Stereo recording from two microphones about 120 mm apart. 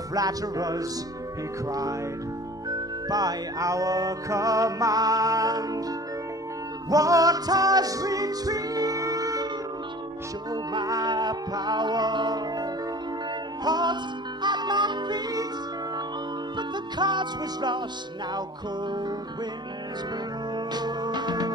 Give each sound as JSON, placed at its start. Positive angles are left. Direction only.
{"t": 0.1, "sound": "music", "side_deg": -30}
{"t": 6.9, "sound": "music", "side_deg": -30}
{"t": 10.5, "sound": "music", "side_deg": -35}
{"t": 13.7, "sound": "music", "side_deg": -35}
{"t": 16.5, "sound": "music", "side_deg": -40}
{"t": 18.9, "sound": "music", "side_deg": -40}
{"t": 20.5, "sound": "music", "side_deg": -35}